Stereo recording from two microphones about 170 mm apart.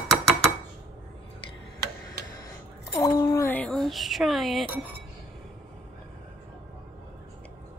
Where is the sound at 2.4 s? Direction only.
20° left (ahead or behind).